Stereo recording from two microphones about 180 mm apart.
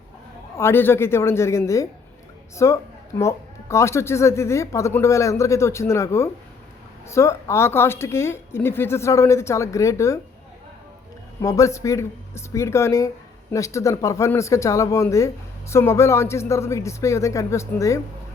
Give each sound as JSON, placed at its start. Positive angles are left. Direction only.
{"t": 0.5, "sound": "a woman's voice", "side_deg": 15}
{"t": 11.4, "sound": "a woman's voice", "side_deg": 15}